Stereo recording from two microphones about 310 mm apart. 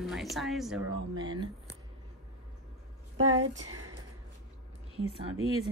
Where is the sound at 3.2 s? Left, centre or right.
Right.